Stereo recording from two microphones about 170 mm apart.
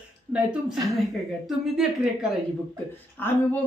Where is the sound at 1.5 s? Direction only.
5° right (ahead or behind).